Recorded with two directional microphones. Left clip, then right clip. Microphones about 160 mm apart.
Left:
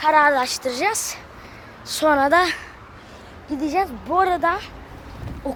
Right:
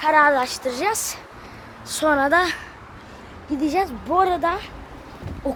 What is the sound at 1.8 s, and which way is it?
Speech, 15° left (ahead or behind).